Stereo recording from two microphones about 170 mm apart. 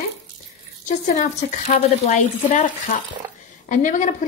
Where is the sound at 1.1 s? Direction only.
45° left (ahead or behind).